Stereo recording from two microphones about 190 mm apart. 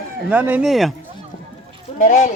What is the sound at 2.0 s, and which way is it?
Speech, 40° left (ahead or behind).